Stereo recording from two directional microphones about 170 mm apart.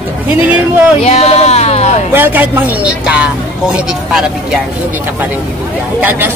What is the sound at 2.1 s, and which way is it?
A woman's voice, 10° right (ahead or behind).